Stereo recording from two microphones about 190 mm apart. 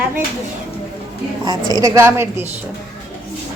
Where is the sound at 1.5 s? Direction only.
20° right (ahead or behind).